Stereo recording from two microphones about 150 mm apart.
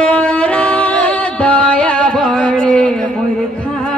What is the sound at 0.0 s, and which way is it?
Music, 5° left (ahead or behind).